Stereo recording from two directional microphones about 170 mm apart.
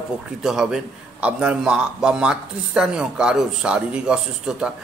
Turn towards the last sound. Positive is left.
turn(degrees=-5)  # may be behind; listen again after turning